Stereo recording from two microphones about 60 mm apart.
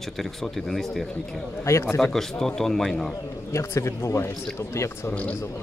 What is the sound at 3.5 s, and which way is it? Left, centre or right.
A man's voice, left.